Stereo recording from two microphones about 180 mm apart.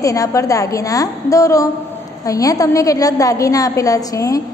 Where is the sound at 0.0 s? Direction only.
20° left (ahead or behind).